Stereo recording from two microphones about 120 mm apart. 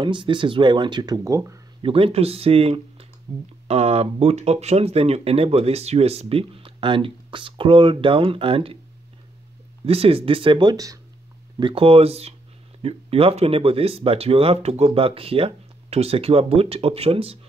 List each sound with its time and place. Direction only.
0.0 s speech: 45° right (ahead or behind); by 1.6 s 25° right (ahead or behind)
1.8 s speech: 50° right (ahead or behind)
3.3 s speech: 35° right (ahead or behind)
3.6 s speech: 55° right (ahead or behind)
9.8 s speech: 50° right (ahead or behind); by 11.0 s 35° right (ahead or behind)
11.6 s speech: 50° right (ahead or behind)